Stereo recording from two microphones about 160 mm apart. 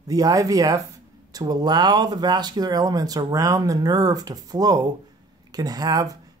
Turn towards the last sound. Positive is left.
turn(degrees=-25)  # may be behind; listen again after turning